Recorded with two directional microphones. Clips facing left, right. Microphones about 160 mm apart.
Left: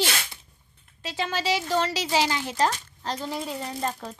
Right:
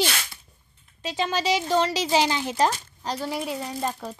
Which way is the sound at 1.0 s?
20° right (ahead or behind).